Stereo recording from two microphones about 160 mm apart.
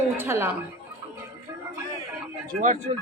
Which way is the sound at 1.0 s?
15° right (ahead or behind).